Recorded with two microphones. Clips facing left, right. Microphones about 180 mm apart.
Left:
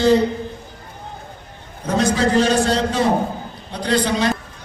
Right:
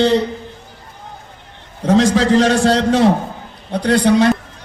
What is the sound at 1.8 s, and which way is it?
A man's voice, 90° right.